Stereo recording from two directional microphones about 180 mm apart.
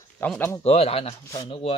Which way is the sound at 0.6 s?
35° left (ahead or behind).